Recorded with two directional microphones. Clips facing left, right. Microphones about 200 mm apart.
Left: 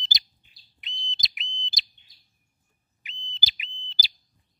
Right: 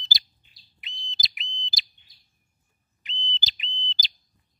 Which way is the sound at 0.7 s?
Centre (ahead or behind).